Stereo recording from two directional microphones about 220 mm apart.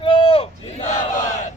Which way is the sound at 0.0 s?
25° left (ahead or behind).